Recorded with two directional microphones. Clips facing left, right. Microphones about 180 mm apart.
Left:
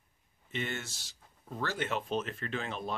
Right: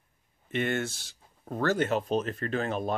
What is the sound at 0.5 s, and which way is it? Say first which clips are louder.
Speech: right 9 dB; 55° right (ahead or behind).